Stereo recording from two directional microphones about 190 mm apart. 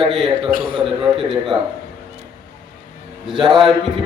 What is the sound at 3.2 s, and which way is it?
Speech, centre (ahead or behind).